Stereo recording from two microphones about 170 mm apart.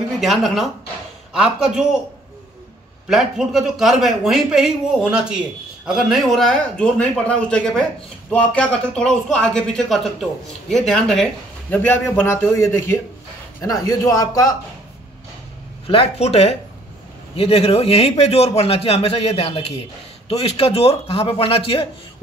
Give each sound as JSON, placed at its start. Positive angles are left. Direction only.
{"t": 0.2, "sound": "speech", "side_deg": 0}
{"t": 3.1, "sound": "a man's voice", "side_deg": 0}
{"t": 15.9, "sound": "a man's voice", "side_deg": 35}